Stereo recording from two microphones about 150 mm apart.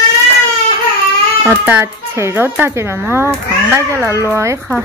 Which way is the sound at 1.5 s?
15° right (ahead or behind).